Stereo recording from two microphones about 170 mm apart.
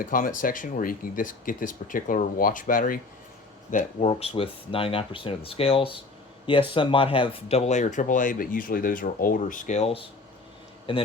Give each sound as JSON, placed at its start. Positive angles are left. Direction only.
{"t": 0.0, "sound": "speech", "side_deg": 55}
{"t": 4.1, "sound": "speech", "side_deg": 35}